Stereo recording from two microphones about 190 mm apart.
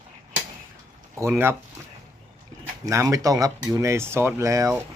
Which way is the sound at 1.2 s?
10° right (ahead or behind).